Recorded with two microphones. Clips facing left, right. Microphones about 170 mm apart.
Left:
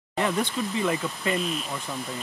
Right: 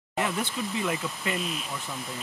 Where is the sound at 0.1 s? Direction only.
10° right (ahead or behind).